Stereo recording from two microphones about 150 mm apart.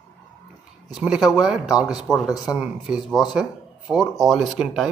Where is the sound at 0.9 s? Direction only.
5° right (ahead or behind).